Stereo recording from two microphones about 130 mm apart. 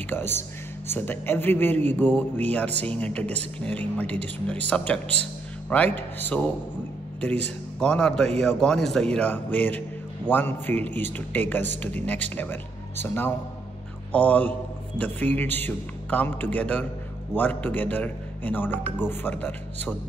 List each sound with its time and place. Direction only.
0.1 s speech: 15° left (ahead or behind)
7.8 s speech: 5° left (ahead or behind)